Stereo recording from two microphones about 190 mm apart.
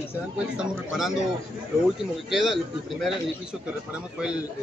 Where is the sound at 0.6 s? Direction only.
Centre (ahead or behind).